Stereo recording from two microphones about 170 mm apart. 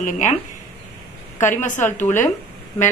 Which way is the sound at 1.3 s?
45° left (ahead or behind).